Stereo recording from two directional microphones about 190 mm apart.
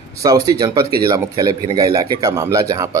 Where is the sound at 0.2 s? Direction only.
20° right (ahead or behind).